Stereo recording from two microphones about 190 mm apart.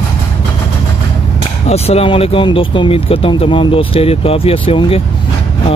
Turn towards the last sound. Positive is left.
turn(degrees=30)  # may be behind; listen again after turning